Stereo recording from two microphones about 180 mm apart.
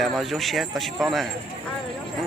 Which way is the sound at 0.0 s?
Centre (ahead or behind).